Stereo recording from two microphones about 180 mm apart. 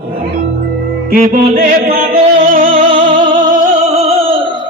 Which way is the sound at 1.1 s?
50° right (ahead or behind).